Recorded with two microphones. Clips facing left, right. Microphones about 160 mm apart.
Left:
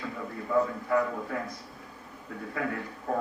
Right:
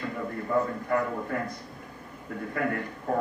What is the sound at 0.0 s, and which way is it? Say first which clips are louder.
A man's voice: right 4 dB; 55° right (ahead or behind).